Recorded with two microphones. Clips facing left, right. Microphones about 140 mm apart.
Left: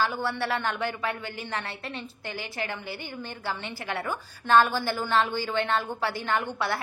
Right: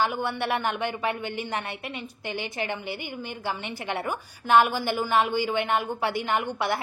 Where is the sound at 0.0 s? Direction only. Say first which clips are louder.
Right 1 dB; 15° right (ahead or behind).